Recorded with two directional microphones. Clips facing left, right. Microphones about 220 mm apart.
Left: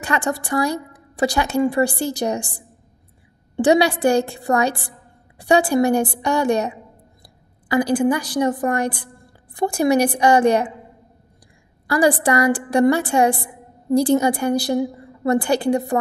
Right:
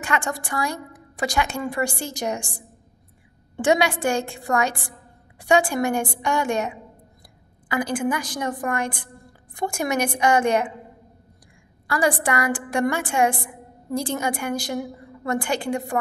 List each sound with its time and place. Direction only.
0.0 s a woman's voice: 35° left (ahead or behind)
11.9 s a woman's voice: 35° left (ahead or behind)